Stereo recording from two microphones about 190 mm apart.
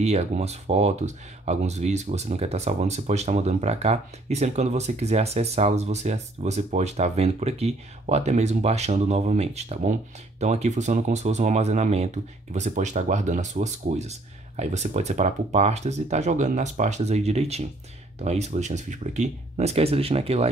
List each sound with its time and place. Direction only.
0.0 s speech: 35° right (ahead or behind)